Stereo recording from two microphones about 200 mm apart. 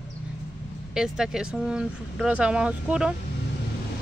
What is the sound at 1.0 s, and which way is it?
Speech, 5° right (ahead or behind).